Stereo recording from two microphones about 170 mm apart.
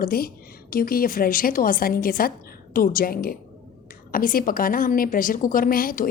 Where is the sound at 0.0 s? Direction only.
60° left (ahead or behind).